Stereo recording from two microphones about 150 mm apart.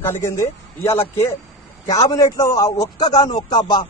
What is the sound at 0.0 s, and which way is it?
Speech, 15° left (ahead or behind).